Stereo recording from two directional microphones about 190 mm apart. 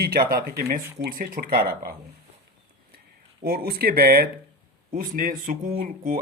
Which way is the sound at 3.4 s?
50° right (ahead or behind).